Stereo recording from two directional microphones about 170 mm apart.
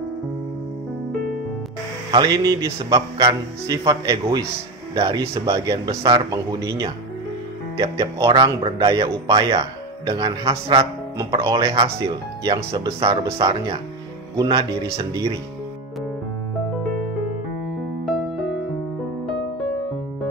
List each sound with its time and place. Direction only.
2.0 s speech: 25° right (ahead or behind)
7.7 s speech: 20° right (ahead or behind)
10.8 s speech: 20° right (ahead or behind)
11.8 s speech: 30° right (ahead or behind)
12.5 s speech: 20° right (ahead or behind)
18.0 s music: centre (ahead or behind)